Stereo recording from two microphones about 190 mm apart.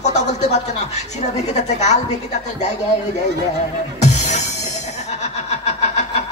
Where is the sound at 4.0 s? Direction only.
35° left (ahead or behind).